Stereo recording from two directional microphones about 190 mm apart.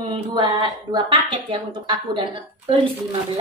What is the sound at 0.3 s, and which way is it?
A woman's voice, 25° right (ahead or behind).